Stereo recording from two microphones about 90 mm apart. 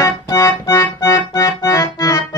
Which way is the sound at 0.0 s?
35° left (ahead or behind).